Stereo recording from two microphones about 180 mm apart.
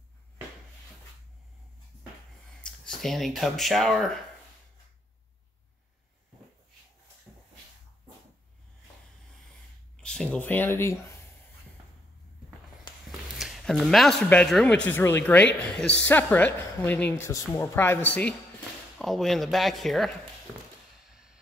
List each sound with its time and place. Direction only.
2.9 s speech: centre (ahead or behind)
7.3 s a sound: 5° right (ahead or behind)
9.9 s speech: 5° left (ahead or behind)
12.9 s a sound: 25° left (ahead or behind)
13.4 s speech: centre (ahead or behind)
21.1 s train: 5° right (ahead or behind)